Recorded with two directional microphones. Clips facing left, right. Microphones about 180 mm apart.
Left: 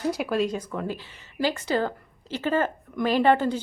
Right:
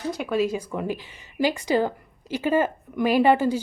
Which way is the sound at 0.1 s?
5° left (ahead or behind).